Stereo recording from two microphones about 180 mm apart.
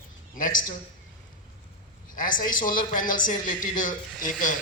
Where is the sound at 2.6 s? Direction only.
50° left (ahead or behind).